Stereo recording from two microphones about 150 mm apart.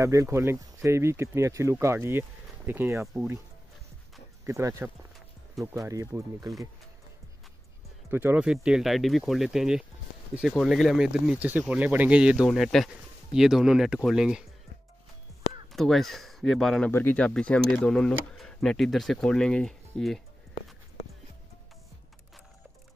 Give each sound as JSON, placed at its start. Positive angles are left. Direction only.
{"t": 0.0, "sound": "speech", "side_deg": -20}
{"t": 4.5, "sound": "speech", "side_deg": -20}
{"t": 8.1, "sound": "speech", "side_deg": -15}
{"t": 15.7, "sound": "speech", "side_deg": 0}